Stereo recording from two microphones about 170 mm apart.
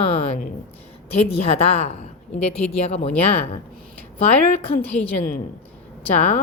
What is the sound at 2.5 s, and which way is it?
Speech, 35° left (ahead or behind).